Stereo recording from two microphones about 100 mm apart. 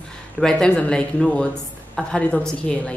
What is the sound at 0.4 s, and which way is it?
A woman's voice, 5° left (ahead or behind).